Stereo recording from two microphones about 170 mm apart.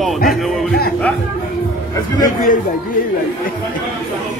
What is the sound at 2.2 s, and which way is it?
Speech, 50° left (ahead or behind).